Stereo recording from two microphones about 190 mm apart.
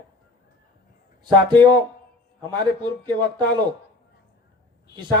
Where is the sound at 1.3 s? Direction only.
25° right (ahead or behind).